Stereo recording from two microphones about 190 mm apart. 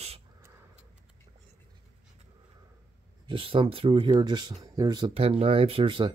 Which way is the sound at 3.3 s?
25° right (ahead or behind).